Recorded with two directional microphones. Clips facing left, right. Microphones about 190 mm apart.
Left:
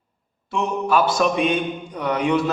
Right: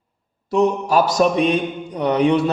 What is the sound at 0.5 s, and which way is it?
A man's voice, 40° right (ahead or behind).